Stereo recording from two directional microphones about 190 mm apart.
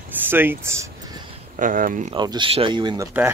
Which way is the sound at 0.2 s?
10° right (ahead or behind).